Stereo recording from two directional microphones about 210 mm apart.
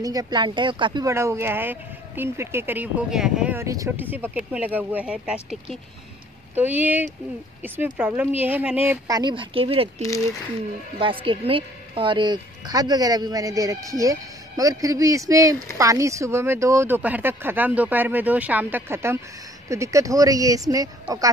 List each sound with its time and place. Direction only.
0.0 s a woman's voice: 15° right (ahead or behind)